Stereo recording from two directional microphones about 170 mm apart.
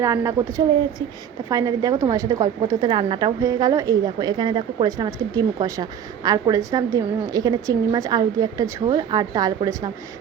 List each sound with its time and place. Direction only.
0.0 s a woman's voice: 20° right (ahead or behind)